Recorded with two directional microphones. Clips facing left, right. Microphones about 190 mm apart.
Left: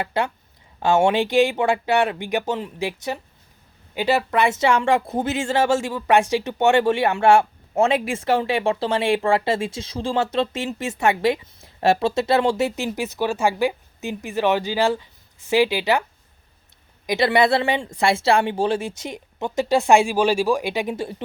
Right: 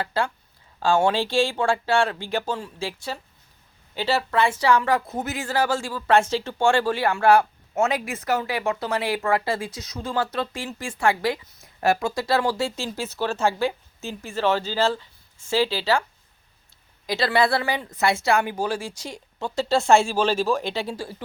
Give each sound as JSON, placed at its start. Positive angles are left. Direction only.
{"t": 0.0, "sound": "speech", "side_deg": 20}
{"t": 17.1, "sound": "speech", "side_deg": 20}